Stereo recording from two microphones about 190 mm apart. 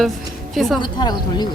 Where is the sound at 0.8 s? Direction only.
20° left (ahead or behind).